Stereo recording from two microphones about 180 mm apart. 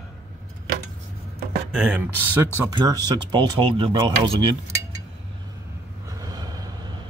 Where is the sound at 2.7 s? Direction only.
20° right (ahead or behind).